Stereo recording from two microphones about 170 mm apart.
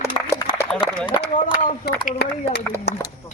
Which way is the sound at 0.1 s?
35° left (ahead or behind).